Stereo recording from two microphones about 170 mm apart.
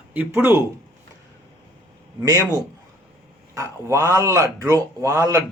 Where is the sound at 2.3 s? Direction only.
20° right (ahead or behind).